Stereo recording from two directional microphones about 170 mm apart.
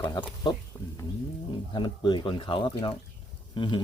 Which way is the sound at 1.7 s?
25° left (ahead or behind).